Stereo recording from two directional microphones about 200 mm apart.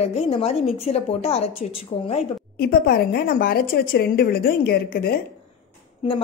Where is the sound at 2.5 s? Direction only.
50° left (ahead or behind).